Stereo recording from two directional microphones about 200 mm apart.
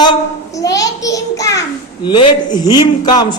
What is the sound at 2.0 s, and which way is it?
A man's voice, 20° left (ahead or behind).